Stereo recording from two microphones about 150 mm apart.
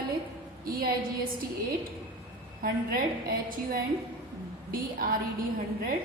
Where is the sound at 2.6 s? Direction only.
75° right (ahead or behind).